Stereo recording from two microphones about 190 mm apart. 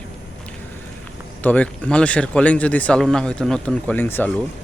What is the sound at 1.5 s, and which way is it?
Speech, 5° left (ahead or behind).